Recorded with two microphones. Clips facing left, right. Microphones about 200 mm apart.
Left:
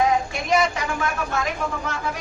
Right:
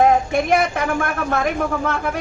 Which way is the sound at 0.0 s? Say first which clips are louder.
Right 6 dB; 55° right (ahead or behind).